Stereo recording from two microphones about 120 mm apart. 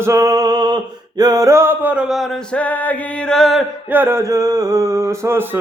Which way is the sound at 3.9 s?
20° right (ahead or behind).